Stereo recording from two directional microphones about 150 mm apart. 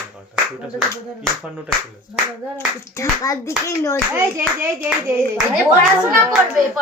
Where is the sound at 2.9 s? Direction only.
20° left (ahead or behind).